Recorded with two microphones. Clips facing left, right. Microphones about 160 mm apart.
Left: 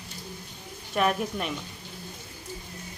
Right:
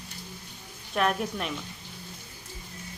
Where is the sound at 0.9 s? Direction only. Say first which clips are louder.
Left 1 dB; centre (ahead or behind).